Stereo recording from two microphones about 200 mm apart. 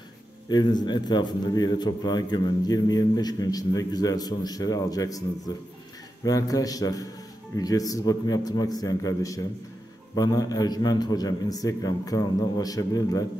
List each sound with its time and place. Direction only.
0.5 s a man's voice: 20° left (ahead or behind)